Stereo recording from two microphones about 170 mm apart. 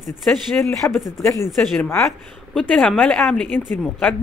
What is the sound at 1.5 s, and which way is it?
Speech, centre (ahead or behind).